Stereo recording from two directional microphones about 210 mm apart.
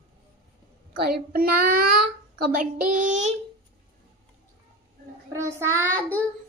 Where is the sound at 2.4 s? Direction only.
40° right (ahead or behind).